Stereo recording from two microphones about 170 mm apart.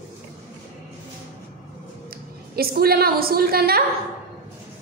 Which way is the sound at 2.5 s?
65° right (ahead or behind).